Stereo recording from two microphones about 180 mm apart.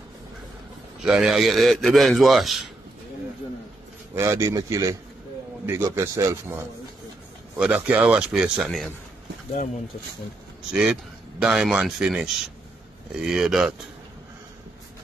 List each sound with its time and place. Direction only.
1.0 s speech: 5° right (ahead or behind)
4.1 s a man's voice: 15° right (ahead or behind); by 8.9 s centre (ahead or behind)
10.7 s speech: 5° right (ahead or behind)